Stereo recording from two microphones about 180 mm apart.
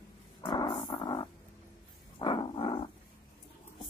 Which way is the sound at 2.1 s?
25° left (ahead or behind).